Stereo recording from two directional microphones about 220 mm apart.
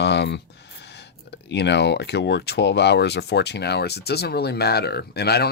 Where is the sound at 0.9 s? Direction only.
50° left (ahead or behind).